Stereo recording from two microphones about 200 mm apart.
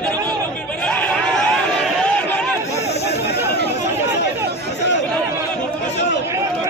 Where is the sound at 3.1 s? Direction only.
55° left (ahead or behind).